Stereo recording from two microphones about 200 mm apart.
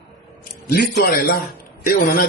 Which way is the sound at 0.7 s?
55° left (ahead or behind).